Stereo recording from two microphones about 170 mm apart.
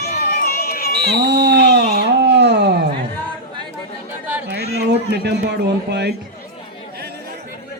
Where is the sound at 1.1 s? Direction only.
75° right (ahead or behind).